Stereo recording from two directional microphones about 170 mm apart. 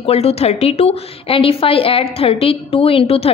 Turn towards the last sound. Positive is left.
turn(degrees=35)  # may be behind; listen again after turning